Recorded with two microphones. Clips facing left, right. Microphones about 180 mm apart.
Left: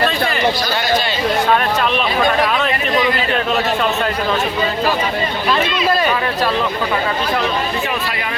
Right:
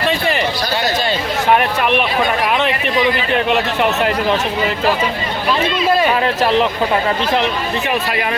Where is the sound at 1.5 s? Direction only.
15° right (ahead or behind).